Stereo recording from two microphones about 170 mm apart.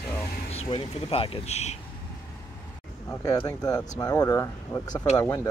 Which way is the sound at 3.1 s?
20° left (ahead or behind).